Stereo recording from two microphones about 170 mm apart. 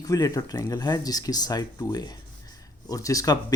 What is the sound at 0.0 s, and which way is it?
Speech, 20° left (ahead or behind).